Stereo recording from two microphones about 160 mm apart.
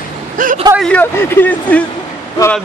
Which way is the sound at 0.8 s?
10° left (ahead or behind).